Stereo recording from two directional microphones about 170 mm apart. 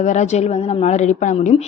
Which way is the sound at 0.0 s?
45° left (ahead or behind).